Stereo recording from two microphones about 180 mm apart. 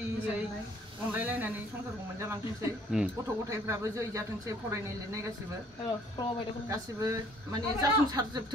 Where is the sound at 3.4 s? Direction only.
15° right (ahead or behind).